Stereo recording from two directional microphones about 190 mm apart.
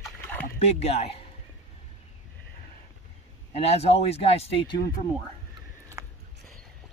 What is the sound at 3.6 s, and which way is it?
Speech, 35° left (ahead or behind).